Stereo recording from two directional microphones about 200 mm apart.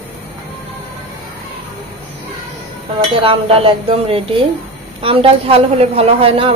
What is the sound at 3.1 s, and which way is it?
A woman's voice, 25° right (ahead or behind).